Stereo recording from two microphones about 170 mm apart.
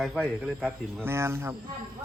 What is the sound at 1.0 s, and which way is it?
Speech, 15° right (ahead or behind).